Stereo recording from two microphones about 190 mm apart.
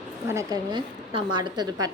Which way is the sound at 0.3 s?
20° right (ahead or behind).